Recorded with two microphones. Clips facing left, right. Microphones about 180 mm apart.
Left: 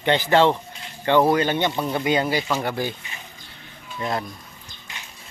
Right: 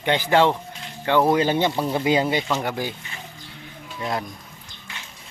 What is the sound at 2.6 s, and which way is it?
Speech, 10° right (ahead or behind).